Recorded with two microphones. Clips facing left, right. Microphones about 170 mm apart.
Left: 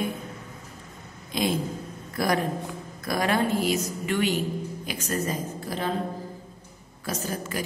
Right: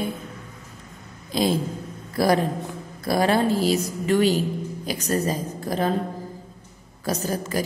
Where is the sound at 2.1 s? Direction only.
35° right (ahead or behind).